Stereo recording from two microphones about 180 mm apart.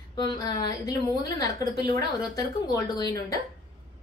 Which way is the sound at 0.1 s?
25° left (ahead or behind).